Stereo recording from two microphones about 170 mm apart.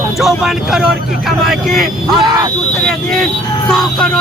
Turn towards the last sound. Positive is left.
turn(degrees=0)  # may be behind; listen again after turning